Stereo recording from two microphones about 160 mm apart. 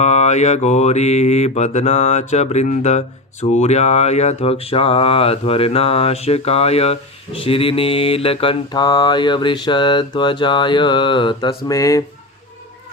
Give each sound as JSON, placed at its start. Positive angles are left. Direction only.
{"t": 0.0, "sound": "mantra", "side_deg": 45}
{"t": 3.4, "sound": "speech", "side_deg": 45}
{"t": 7.4, "sound": "mantra", "side_deg": 35}